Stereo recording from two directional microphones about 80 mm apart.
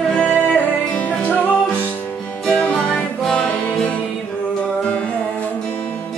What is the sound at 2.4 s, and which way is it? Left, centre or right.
Music, centre.